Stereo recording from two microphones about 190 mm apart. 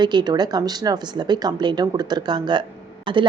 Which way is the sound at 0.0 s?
25° right (ahead or behind).